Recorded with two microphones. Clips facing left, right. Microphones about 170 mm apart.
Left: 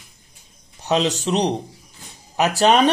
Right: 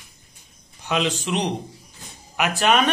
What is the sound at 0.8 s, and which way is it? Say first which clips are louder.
A man's voice: left 4 dB; 40° left (ahead or behind).